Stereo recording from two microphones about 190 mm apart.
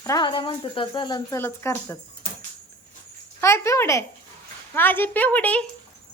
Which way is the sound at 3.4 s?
15° left (ahead or behind).